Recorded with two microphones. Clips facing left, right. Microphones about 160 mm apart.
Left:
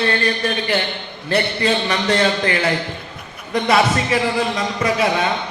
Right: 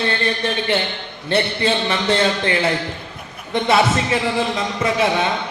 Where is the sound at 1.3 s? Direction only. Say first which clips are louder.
Even; 30° right (ahead or behind).